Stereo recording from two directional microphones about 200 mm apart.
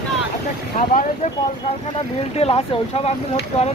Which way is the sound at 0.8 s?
35° left (ahead or behind).